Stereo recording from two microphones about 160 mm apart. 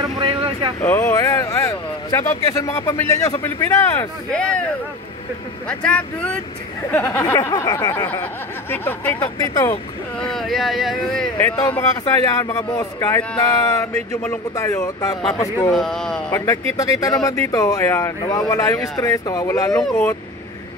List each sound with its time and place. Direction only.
0.0 s vehicle: 30° right (ahead or behind)
0.7 s speech: 15° left (ahead or behind)
5.7 s speech: 5° left (ahead or behind)
10.1 s speech: 5° left (ahead or behind)
11.3 s speech: 15° left (ahead or behind)
15.7 s speech: 5° left (ahead or behind)
16.3 s speech: 20° left (ahead or behind)